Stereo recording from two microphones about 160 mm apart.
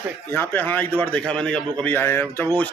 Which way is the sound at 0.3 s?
10° left (ahead or behind).